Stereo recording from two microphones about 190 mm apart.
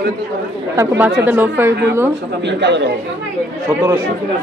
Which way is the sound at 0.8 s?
10° right (ahead or behind).